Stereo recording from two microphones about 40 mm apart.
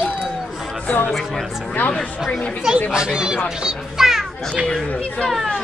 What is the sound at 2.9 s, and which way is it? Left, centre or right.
Speech, centre.